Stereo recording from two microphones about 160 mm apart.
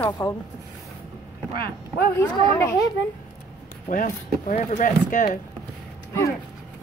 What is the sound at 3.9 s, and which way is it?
Speech, 55° left (ahead or behind).